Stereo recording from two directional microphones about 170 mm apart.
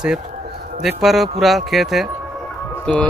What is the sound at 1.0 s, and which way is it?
Speech, centre (ahead or behind).